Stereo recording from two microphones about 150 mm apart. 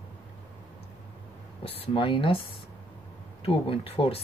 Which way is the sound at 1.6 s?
40° left (ahead or behind).